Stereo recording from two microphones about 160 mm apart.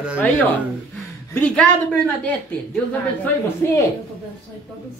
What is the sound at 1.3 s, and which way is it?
Speech, 5° left (ahead or behind).